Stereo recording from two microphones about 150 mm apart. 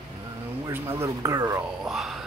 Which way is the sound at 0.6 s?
15° right (ahead or behind).